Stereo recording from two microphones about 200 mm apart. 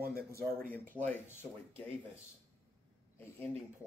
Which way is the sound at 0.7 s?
10° left (ahead or behind).